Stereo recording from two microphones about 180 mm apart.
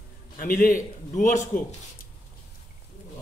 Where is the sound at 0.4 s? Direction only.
50° left (ahead or behind).